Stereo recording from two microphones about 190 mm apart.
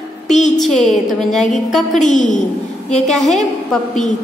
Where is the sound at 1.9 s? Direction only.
40° left (ahead or behind).